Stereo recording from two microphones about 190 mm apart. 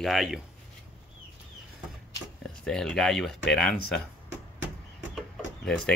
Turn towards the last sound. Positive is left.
turn(degrees=0)  # may be behind; listen again after turning